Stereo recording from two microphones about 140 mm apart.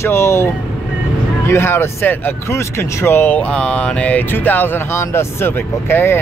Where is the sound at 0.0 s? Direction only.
20° left (ahead or behind).